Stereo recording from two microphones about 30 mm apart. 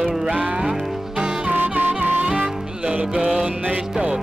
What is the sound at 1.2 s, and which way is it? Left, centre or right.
Music, right.